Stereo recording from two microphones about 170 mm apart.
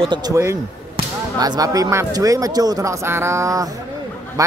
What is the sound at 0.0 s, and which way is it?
Speech, 25° right (ahead or behind).